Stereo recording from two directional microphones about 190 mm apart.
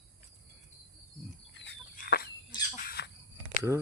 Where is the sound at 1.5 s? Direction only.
65° left (ahead or behind).